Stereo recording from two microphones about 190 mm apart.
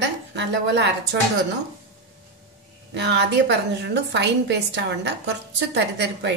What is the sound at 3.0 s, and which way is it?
A woman's voice, 65° right (ahead or behind).